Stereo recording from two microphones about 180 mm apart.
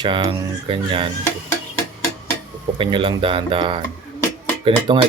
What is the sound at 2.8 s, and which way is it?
Speech, 25° right (ahead or behind).